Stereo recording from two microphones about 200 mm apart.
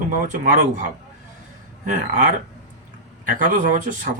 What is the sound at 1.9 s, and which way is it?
Speech, 40° right (ahead or behind).